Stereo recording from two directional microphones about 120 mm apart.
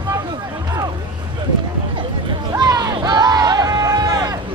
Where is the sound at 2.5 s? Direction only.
35° right (ahead or behind).